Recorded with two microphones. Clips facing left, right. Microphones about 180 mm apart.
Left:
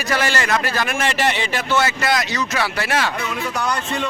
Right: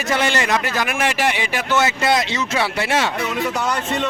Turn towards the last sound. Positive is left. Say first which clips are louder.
# right 1 dB
turn(degrees=-25)  # may be behind; listen again after turning